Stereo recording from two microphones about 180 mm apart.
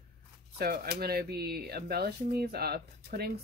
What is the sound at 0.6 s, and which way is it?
Speech, 60° right (ahead or behind).